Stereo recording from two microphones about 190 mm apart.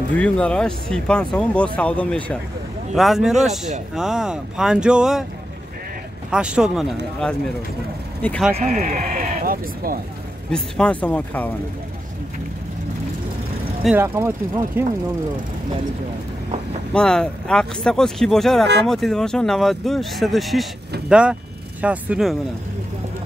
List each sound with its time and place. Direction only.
0.2 s speech: 5° left (ahead or behind)
6.3 s speech: 5° right (ahead or behind)
8.5 s speech: 35° right (ahead or behind)
10.5 s speech: 5° left (ahead or behind)
13.8 s speech: 10° right (ahead or behind)
16.9 s speech: 5° left (ahead or behind)